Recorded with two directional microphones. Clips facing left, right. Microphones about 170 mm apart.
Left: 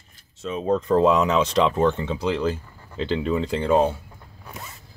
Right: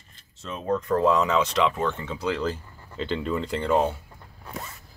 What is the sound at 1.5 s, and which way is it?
Speech, 35° left (ahead or behind).